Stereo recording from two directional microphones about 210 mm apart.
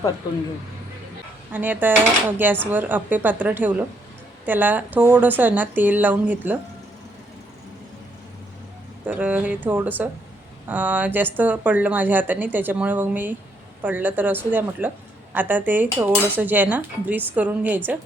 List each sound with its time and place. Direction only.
1.5 s speech: 10° right (ahead or behind)
9.0 s speech: 5° right (ahead or behind)